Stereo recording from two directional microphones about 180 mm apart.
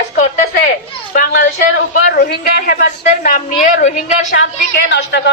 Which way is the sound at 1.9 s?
65° left (ahead or behind).